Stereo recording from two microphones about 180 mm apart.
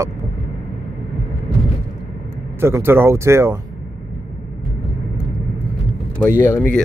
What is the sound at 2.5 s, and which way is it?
Speech, 15° right (ahead or behind).